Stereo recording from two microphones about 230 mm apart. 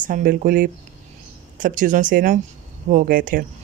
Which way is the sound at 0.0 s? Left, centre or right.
Right.